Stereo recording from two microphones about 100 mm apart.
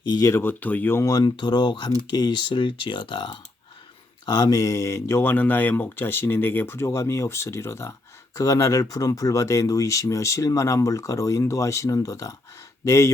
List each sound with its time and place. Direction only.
0.0 s speech: 45° left (ahead or behind)
0.3 s speech: 25° left (ahead or behind)
1.0 s speech: 40° left (ahead or behind)
4.3 s speech: 40° left (ahead or behind)